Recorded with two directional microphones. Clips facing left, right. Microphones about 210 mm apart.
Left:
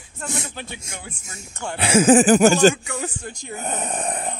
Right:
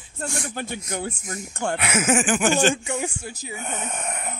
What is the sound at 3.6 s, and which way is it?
Speech, 35° left (ahead or behind).